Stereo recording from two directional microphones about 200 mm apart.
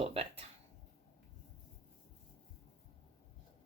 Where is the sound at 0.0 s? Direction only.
30° right (ahead or behind).